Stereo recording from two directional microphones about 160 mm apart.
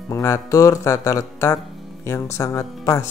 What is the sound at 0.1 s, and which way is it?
Speech, 20° left (ahead or behind).